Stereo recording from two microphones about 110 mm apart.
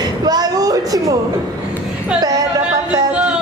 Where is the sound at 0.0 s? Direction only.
35° right (ahead or behind).